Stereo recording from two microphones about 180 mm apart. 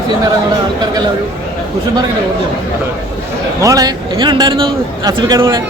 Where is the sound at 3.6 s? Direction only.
20° right (ahead or behind).